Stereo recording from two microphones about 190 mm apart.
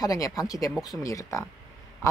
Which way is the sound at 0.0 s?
20° left (ahead or behind).